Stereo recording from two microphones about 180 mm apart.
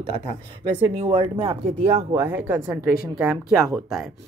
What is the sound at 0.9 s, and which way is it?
Speech, 30° right (ahead or behind).